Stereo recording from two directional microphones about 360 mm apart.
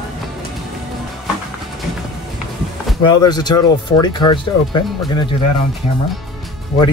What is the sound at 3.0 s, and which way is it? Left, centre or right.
Speech, centre.